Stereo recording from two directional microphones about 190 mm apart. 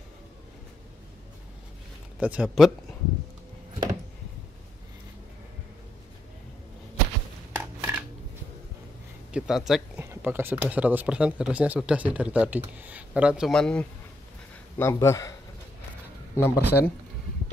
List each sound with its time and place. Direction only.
2.1 s speech: 5° right (ahead or behind)
7.5 s a sound: 10° right (ahead or behind)
9.3 s speech: centre (ahead or behind)
14.8 s speech: 15° left (ahead or behind)
16.3 s speech: 10° left (ahead or behind)